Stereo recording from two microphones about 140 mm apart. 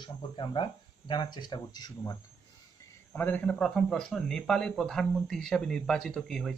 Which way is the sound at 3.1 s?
15° left (ahead or behind).